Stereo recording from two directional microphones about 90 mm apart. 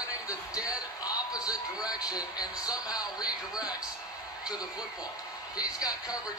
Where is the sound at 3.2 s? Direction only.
10° right (ahead or behind).